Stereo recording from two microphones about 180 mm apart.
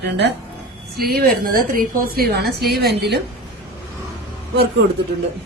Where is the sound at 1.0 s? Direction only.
55° right (ahead or behind).